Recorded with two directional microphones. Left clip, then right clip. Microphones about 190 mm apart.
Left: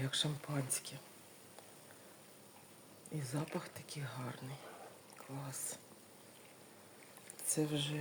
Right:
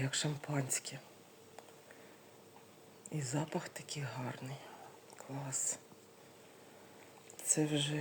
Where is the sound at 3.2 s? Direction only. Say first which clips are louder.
Right 3 dB; 10° right (ahead or behind).